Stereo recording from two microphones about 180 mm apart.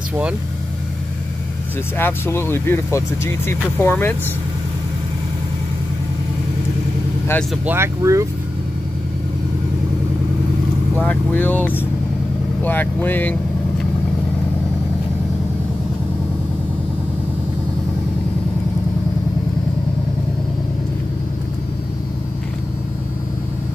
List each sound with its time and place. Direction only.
2.0 s speech: 10° left (ahead or behind)
7.6 s speech: 15° right (ahead or behind)
11.0 s speech: 10° left (ahead or behind)